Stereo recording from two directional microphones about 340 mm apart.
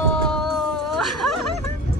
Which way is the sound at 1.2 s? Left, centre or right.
Left.